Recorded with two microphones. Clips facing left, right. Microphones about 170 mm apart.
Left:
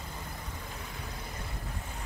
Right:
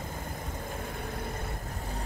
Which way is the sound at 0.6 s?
50° right (ahead or behind).